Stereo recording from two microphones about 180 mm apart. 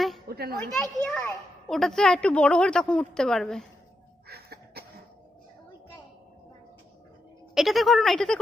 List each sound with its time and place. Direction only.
0.3 s a child's voice: 60° right (ahead or behind)
0.7 s a woman's voice: centre (ahead or behind)
4.3 s cough: 60° right (ahead or behind)
7.5 s a woman's voice: centre (ahead or behind)